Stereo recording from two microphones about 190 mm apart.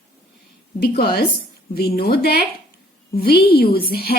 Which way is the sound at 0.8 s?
50° left (ahead or behind).